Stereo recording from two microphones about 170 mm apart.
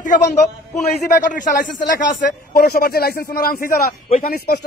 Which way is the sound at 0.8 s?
50° left (ahead or behind).